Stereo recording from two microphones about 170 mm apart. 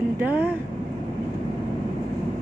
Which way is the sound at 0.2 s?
10° right (ahead or behind).